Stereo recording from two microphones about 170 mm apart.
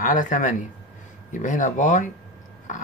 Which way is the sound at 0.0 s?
50° left (ahead or behind).